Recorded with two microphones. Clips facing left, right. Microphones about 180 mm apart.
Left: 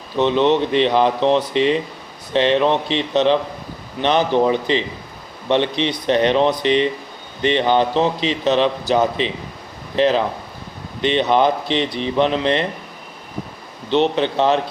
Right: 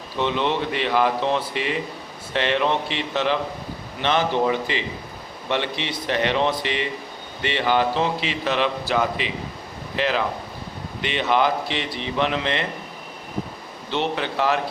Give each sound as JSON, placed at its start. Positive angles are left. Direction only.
{"t": 0.2, "sound": "speech", "side_deg": 20}
{"t": 13.9, "sound": "speech", "side_deg": 20}